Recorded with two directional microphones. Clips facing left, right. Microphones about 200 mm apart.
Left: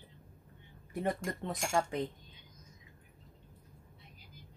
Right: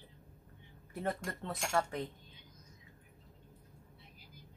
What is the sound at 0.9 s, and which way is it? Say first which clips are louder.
Speech: left 3 dB; 15° left (ahead or behind).